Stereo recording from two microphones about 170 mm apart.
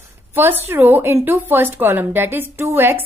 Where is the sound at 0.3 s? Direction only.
10° right (ahead or behind).